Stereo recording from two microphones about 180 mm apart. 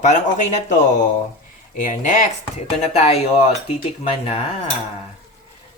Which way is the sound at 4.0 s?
35° left (ahead or behind).